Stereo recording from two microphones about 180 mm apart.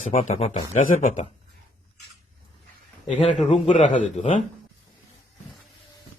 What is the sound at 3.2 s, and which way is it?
Speech, 35° left (ahead or behind).